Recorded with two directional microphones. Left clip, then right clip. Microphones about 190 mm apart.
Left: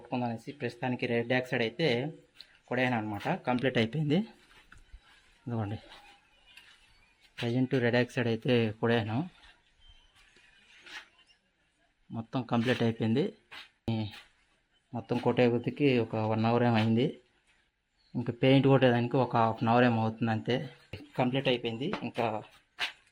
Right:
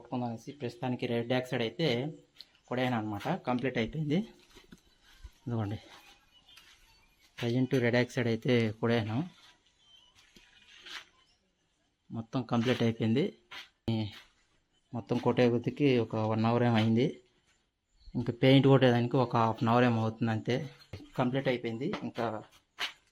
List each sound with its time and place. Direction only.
0.1 s speech: 10° left (ahead or behind)
3.6 s speech: 50° left (ahead or behind)
4.1 s speech: 15° left (ahead or behind)
5.5 s speech: 5° right (ahead or behind)
7.3 s speech: centre (ahead or behind)
12.1 s speech: centre (ahead or behind)
21.8 s speech: 10° left (ahead or behind)